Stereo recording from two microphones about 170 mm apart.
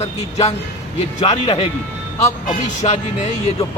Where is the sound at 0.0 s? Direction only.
40° left (ahead or behind).